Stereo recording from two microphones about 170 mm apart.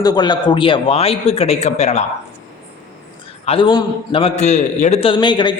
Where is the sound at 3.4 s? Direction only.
30° left (ahead or behind).